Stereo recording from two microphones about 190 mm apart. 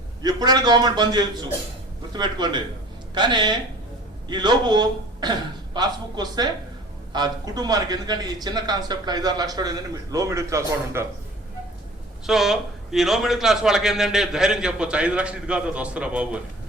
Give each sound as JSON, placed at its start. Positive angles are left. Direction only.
{"t": 0.2, "sound": "a man's voice", "side_deg": -20}
{"t": 12.2, "sound": "a man's voice", "side_deg": 0}